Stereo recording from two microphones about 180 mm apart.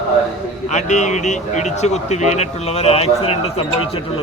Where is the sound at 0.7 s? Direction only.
40° left (ahead or behind).